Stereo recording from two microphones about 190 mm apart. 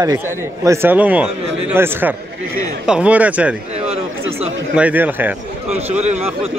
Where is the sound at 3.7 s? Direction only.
35° right (ahead or behind).